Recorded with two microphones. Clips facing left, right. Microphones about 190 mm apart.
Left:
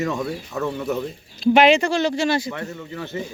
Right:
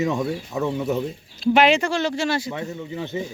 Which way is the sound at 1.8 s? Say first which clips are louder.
Left 2 dB; 15° left (ahead or behind).